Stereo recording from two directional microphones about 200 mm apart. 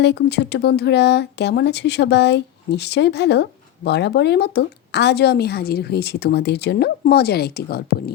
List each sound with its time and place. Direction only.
0.0 s a woman's voice: 60° left (ahead or behind)